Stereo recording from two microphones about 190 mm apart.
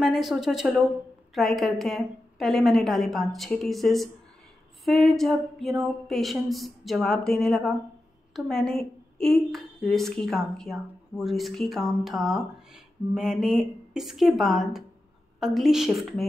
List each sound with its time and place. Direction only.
0.0 s a woman's voice: centre (ahead or behind)